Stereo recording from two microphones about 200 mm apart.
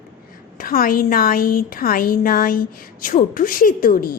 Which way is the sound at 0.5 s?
45° left (ahead or behind).